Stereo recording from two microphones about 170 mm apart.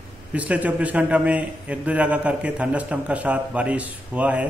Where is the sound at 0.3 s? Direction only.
10° right (ahead or behind).